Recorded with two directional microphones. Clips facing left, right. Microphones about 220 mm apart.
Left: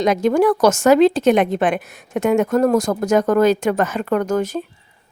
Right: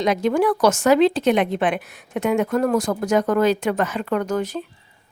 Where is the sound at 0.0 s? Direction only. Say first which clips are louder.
Left 3 dB; 45° left (ahead or behind).